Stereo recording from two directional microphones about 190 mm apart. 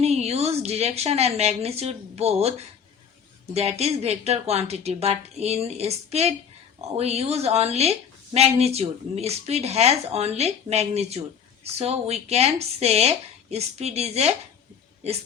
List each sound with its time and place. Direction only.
0.0 s a woman's voice: 35° right (ahead or behind)